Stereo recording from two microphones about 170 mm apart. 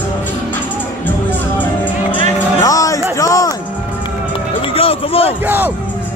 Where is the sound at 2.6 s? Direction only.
20° left (ahead or behind).